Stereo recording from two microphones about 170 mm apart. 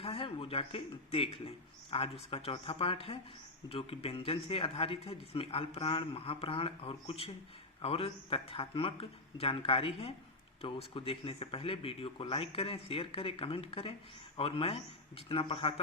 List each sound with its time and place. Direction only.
0.0 s speech: 35° left (ahead or behind)